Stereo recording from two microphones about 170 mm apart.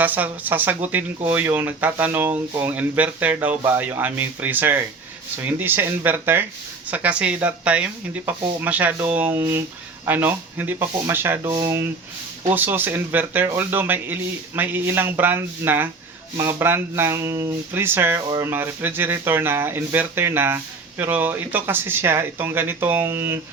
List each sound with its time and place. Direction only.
0.0 s speech: 10° right (ahead or behind)